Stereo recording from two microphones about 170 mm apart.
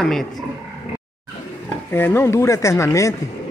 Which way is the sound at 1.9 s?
15° left (ahead or behind).